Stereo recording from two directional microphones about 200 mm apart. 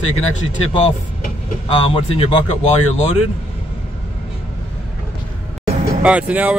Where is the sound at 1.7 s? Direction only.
30° left (ahead or behind).